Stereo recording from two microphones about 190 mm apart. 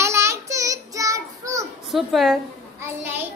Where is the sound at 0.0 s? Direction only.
15° right (ahead or behind).